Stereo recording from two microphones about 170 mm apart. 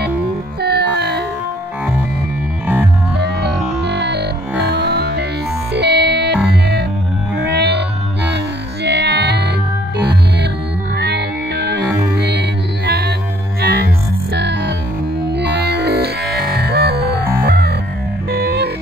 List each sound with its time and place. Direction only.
0.6 s music: 70° right (ahead or behind)
3.8 s music: 80° right
8.8 s music: 80° right